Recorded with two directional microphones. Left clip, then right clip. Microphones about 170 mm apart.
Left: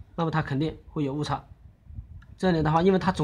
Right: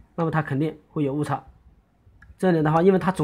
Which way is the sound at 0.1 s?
15° right (ahead or behind).